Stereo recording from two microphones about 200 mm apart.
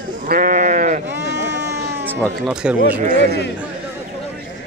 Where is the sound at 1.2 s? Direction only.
60° right (ahead or behind).